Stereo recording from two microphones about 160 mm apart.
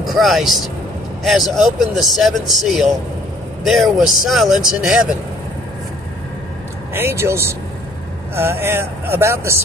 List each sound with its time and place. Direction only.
0.0 s speech: centre (ahead or behind)
6.9 s speech: 15° right (ahead or behind)